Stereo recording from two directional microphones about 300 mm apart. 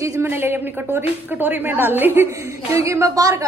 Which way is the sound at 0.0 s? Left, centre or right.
Centre.